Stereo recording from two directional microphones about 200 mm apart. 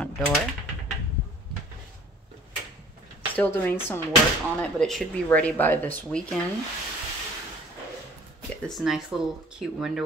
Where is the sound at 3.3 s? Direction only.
10° left (ahead or behind).